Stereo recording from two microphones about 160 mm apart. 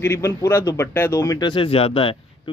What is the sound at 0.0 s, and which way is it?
Speech, 15° left (ahead or behind).